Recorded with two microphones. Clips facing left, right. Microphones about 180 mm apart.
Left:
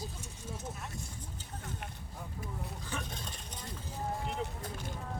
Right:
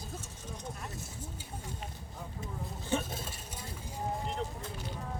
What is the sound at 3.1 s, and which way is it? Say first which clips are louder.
Stir: right 3 dB; 5° right (ahead or behind).